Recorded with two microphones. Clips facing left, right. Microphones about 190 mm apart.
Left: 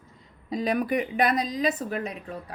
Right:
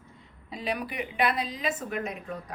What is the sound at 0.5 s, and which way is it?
A woman's voice, 45° left (ahead or behind).